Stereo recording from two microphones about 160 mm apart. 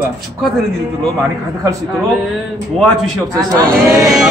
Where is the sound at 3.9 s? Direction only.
20° right (ahead or behind).